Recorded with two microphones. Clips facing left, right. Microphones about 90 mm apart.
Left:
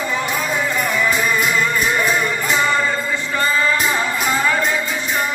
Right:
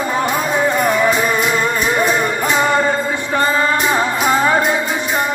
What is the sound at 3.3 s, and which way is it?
Music, 30° right (ahead or behind).